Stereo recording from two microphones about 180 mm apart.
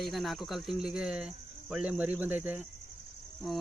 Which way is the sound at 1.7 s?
5° right (ahead or behind).